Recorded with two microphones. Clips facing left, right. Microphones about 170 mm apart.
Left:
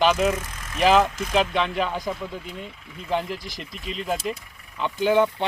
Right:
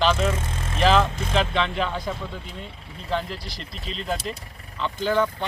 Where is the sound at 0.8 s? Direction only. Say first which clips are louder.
Left 2 dB; 10° left (ahead or behind).